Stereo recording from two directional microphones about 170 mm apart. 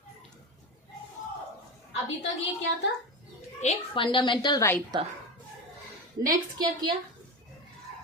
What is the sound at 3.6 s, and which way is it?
A woman's voice, 35° left (ahead or behind).